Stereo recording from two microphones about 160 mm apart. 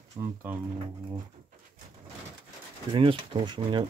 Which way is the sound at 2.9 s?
30° right (ahead or behind).